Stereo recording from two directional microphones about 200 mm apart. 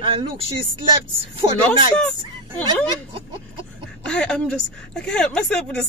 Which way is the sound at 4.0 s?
5° left (ahead or behind).